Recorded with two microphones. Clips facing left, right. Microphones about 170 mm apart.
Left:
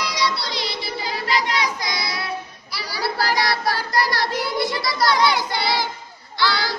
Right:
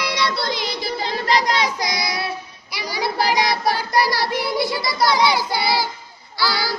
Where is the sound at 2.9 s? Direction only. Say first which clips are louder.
Right 2 dB; 15° right (ahead or behind).